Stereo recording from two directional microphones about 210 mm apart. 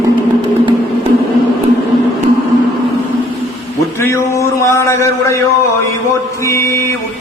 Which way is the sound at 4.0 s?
15° left (ahead or behind).